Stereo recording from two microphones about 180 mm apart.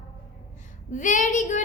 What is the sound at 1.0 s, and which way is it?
Speech, 45° left (ahead or behind).